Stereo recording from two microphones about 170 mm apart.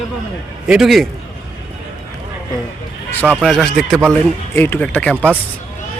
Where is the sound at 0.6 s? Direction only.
Centre (ahead or behind).